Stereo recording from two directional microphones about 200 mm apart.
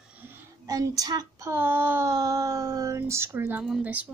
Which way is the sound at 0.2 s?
15° right (ahead or behind).